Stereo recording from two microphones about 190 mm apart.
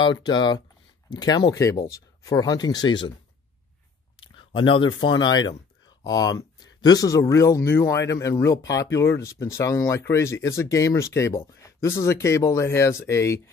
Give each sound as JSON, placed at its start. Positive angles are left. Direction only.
{"t": 0.0, "sound": "speech", "side_deg": 25}
{"t": 4.2, "sound": "a sound", "side_deg": 25}
{"t": 5.2, "sound": "speech", "side_deg": 20}